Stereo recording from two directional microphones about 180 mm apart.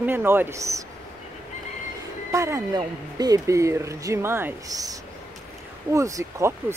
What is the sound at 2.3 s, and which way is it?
Speech, 15° right (ahead or behind).